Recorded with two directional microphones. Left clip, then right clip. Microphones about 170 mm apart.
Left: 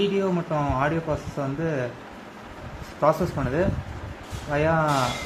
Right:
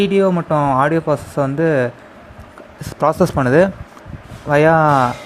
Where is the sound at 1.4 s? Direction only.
60° right (ahead or behind).